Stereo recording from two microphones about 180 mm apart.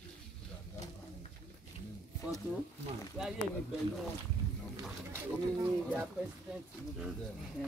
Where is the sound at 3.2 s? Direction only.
5° right (ahead or behind).